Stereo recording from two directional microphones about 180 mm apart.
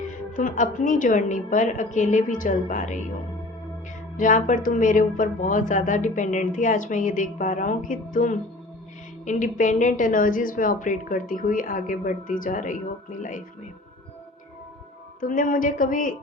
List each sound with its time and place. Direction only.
0.1 s speech: 45° left (ahead or behind)
4.2 s speech: 45° left (ahead or behind)
15.2 s speech: 50° left (ahead or behind)